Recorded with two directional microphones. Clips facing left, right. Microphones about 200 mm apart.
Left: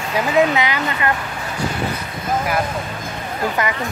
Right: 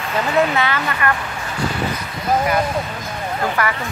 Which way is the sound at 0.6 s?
15° left (ahead or behind).